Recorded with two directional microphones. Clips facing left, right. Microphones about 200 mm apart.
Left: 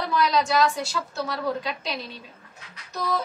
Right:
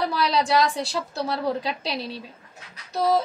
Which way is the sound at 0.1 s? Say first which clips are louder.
Even; 30° right (ahead or behind).